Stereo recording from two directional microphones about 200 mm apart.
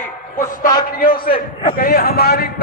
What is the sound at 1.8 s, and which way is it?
Speech, 50° left (ahead or behind).